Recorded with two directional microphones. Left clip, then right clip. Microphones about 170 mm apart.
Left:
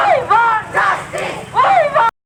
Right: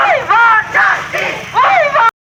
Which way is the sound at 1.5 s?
20° right (ahead or behind).